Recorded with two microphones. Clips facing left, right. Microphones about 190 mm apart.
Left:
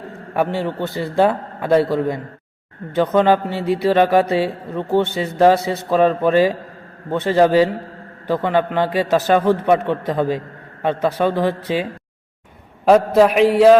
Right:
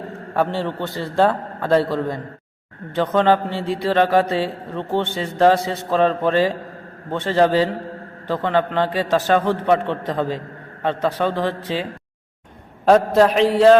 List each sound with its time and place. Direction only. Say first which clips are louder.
0.3 s a man's voice: left 1 dB; 15° left (ahead or behind)